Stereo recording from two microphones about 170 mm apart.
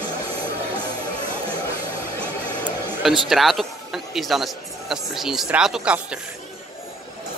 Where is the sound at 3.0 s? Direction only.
Centre (ahead or behind).